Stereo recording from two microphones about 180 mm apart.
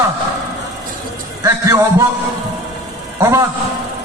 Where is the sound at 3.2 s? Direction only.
15° right (ahead or behind).